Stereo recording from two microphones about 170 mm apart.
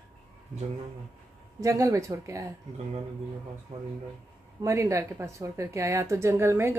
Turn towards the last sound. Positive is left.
turn(degrees=-15)  # may be behind; listen again after turning